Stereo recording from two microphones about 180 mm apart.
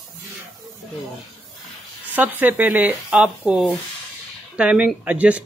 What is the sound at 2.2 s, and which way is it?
Speech, 10° right (ahead or behind).